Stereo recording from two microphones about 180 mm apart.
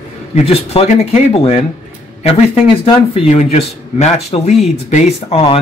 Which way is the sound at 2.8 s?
30° left (ahead or behind).